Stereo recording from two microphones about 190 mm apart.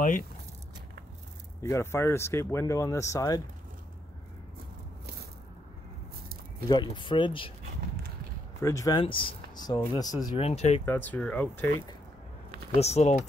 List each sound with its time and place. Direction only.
1.6 s speech: 15° left (ahead or behind)
6.7 s speech: 25° left (ahead or behind)
8.5 s speech: 15° left (ahead or behind); by 10.8 s 35° left (ahead or behind)
10.9 s speech: 10° left (ahead or behind)
12.7 s speech: 35° left (ahead or behind)